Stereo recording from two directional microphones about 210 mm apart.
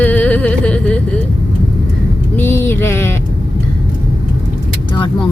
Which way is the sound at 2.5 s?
10° left (ahead or behind).